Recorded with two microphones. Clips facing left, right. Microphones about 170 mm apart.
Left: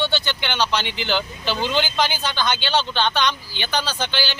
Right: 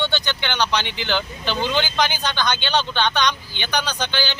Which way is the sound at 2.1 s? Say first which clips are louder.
Right 1 dB; 15° right (ahead or behind).